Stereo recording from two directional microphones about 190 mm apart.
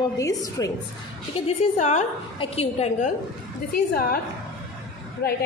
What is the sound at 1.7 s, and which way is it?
A woman's voice, 40° left (ahead or behind).